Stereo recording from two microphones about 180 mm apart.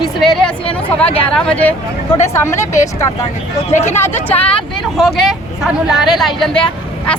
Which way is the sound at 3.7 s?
40° left (ahead or behind).